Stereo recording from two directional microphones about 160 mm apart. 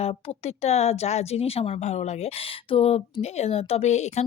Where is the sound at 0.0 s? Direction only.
40° left (ahead or behind).